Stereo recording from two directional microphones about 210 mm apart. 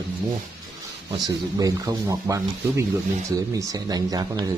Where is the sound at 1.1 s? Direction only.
15° right (ahead or behind).